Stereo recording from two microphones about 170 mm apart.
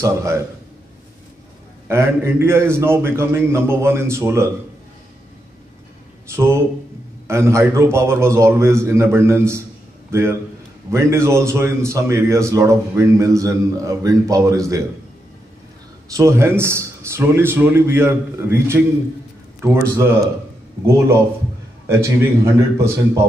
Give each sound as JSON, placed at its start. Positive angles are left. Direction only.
{"t": 0.0, "sound": "a man's voice", "side_deg": -15}
{"t": 1.9, "sound": "a man's voice", "side_deg": -15}
{"t": 6.3, "sound": "a man's voice", "side_deg": -15}
{"t": 16.1, "sound": "a man's voice", "side_deg": -15}
{"t": 21.8, "sound": "a man's voice", "side_deg": -15}